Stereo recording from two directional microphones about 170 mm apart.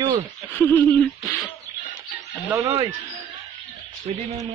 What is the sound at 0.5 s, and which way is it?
Speech, 10° left (ahead or behind).